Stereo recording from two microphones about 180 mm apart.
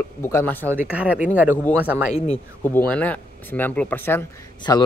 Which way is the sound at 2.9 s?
10° left (ahead or behind).